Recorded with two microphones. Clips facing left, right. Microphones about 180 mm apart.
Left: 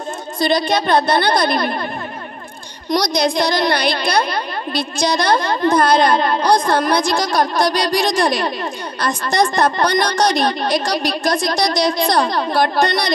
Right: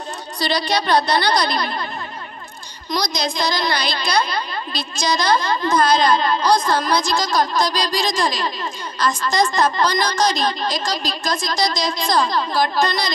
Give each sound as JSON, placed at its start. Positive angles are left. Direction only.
{"t": 0.4, "sound": "a woman's voice", "side_deg": 50}
{"t": 2.9, "sound": "a woman's voice", "side_deg": 60}